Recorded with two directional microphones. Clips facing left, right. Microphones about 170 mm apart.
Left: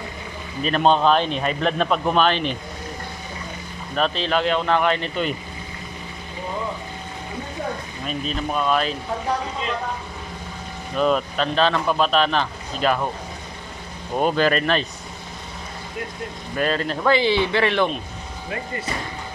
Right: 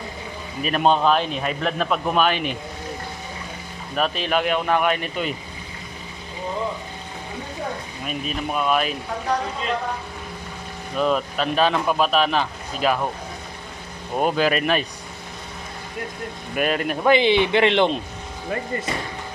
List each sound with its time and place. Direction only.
0.6 s speech: 10° right (ahead or behind)
3.9 s speech: 10° right (ahead or behind)
8.0 s speech: 10° right (ahead or behind)
11.0 s speech: centre (ahead or behind)
14.1 s speech: 5° right (ahead or behind)
16.5 s speech: 15° right (ahead or behind)